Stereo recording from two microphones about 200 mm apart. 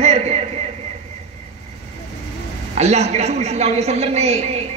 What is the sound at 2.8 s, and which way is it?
A woman's voice, 35° right (ahead or behind).